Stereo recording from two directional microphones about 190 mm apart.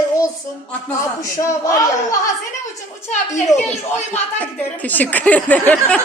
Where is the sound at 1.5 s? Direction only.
15° left (ahead or behind).